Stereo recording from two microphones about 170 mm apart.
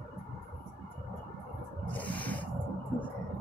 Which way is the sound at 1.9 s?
10° left (ahead or behind).